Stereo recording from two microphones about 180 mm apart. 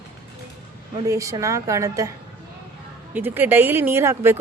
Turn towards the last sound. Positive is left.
turn(degrees=-15)  # may be behind; listen again after turning